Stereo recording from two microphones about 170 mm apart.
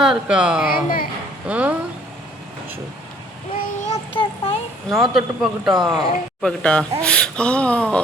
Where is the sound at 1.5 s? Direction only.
10° right (ahead or behind).